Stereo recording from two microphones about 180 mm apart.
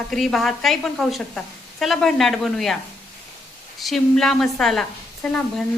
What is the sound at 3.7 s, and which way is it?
A woman's voice, centre (ahead or behind).